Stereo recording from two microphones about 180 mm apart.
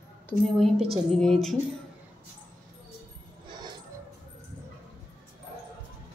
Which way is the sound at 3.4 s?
25° right (ahead or behind).